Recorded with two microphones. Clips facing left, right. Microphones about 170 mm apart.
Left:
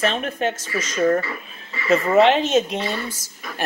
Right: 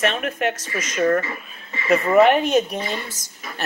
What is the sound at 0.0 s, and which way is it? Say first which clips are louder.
Speech: even; 30° left (ahead or behind).